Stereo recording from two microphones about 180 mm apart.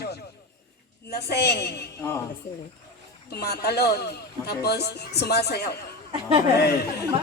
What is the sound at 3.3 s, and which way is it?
A man's voice, 65° left (ahead or behind).